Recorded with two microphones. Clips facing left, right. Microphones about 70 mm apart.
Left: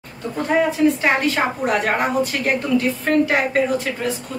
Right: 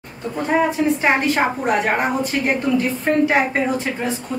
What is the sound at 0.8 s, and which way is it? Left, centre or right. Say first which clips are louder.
Speech: left 2 dB; right.